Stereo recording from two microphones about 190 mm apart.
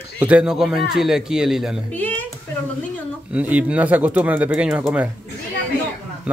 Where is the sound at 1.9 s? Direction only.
10° left (ahead or behind).